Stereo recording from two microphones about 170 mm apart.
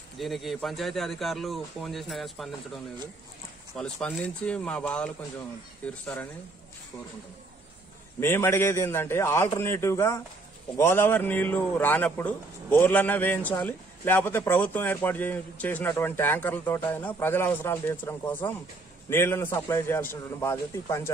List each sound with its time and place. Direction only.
0.2 s speech: centre (ahead or behind)
8.2 s a man's voice: 15° left (ahead or behind)